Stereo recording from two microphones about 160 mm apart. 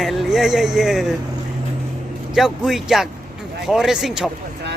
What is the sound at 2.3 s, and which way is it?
Speech, centre (ahead or behind).